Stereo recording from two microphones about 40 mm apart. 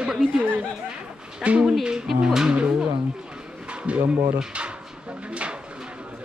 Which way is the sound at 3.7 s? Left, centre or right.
Right.